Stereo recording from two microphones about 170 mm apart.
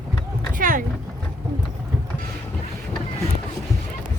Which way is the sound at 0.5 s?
55° right (ahead or behind).